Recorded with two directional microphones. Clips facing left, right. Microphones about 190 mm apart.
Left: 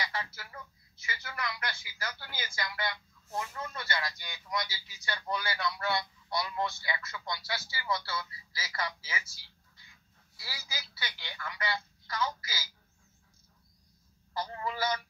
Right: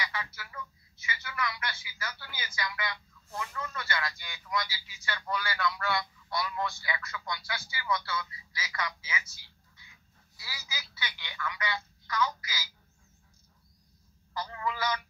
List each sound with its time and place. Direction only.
0.0 s a sound: 35° left (ahead or behind)
1.0 s speech: 40° left (ahead or behind)
3.3 s a man's voice: 30° left (ahead or behind)
10.8 s speech: 40° left (ahead or behind)
14.3 s speech: 30° left (ahead or behind)